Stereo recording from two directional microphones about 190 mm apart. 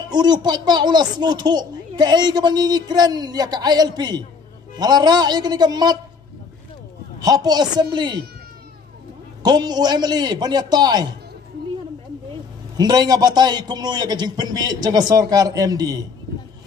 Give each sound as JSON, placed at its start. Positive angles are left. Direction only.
{"t": 0.1, "sound": "a child's voice", "side_deg": -20}
{"t": 7.2, "sound": "a child's voice", "side_deg": -20}
{"t": 9.4, "sound": "a child's voice", "side_deg": -20}
{"t": 12.7, "sound": "a child's voice", "side_deg": -20}